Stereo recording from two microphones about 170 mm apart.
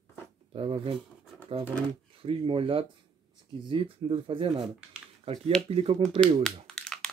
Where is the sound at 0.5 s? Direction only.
35° right (ahead or behind).